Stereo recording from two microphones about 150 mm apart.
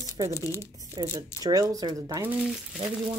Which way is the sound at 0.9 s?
25° right (ahead or behind).